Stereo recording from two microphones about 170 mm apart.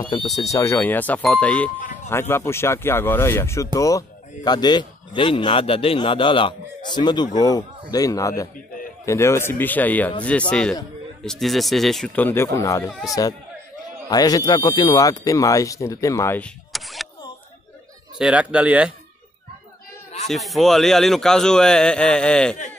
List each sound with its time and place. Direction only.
0.4 s a man's voice: 20° left (ahead or behind)
14.0 s a man's voice: 20° left (ahead or behind); by 17.1 s centre (ahead or behind)
18.1 s speech: 5° right (ahead or behind)
20.2 s a man's voice: centre (ahead or behind)